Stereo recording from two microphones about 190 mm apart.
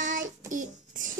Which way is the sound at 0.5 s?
45° right (ahead or behind).